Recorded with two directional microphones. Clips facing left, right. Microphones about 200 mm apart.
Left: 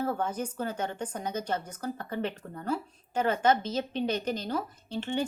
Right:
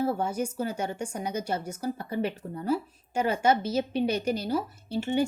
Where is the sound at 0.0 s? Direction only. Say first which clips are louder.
Right 3 dB; 10° right (ahead or behind).